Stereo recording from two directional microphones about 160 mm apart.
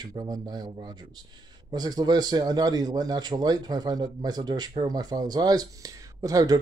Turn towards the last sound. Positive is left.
turn(degrees=-20)  # may be behind; listen again after turning